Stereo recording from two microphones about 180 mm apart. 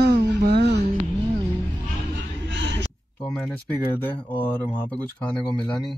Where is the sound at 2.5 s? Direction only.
90° right.